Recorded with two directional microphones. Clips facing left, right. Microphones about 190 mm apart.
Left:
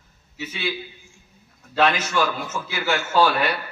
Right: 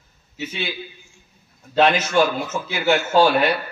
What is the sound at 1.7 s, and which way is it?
A man's voice, 25° right (ahead or behind).